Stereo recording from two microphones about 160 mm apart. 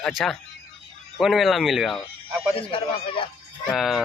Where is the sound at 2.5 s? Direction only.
35° left (ahead or behind).